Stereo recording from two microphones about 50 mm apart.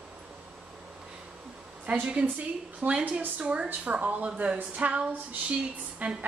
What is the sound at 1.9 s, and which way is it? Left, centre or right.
A woman's voice, right.